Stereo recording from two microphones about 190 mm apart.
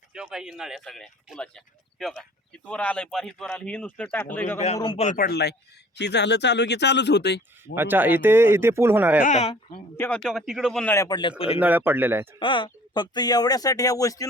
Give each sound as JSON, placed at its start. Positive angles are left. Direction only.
{"t": 0.1, "sound": "speech", "side_deg": -5}
{"t": 4.5, "sound": "speech", "side_deg": 35}
{"t": 5.2, "sound": "speech", "side_deg": 60}
{"t": 7.8, "sound": "speech", "side_deg": -10}
{"t": 9.2, "sound": "speech", "side_deg": 35}
{"t": 10.0, "sound": "speech", "side_deg": 5}
{"t": 10.9, "sound": "speech", "side_deg": 20}
{"t": 11.6, "sound": "speech", "side_deg": -10}
{"t": 12.4, "sound": "speech", "side_deg": 25}